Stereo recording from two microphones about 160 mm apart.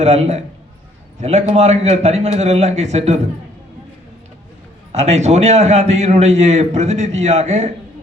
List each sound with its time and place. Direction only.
0.0 s a man's voice: 45° right (ahead or behind)
4.9 s a man's voice: 40° right (ahead or behind)